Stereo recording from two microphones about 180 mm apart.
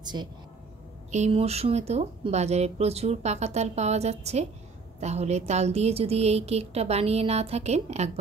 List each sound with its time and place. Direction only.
0.0 s speech: 25° right (ahead or behind)
1.1 s speech: 35° right (ahead or behind)